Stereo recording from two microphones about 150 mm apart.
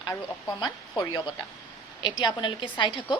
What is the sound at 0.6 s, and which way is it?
A woman's voice, 30° left (ahead or behind).